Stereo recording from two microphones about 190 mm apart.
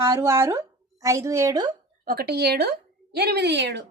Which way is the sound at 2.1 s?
55° right (ahead or behind).